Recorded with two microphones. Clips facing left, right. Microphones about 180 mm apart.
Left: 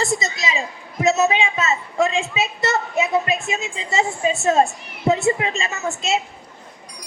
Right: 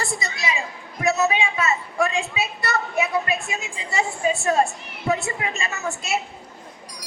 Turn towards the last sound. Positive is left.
turn(degrees=20)  # may be behind; listen again after turning